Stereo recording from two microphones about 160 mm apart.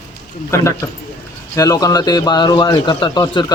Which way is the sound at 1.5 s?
20° left (ahead or behind).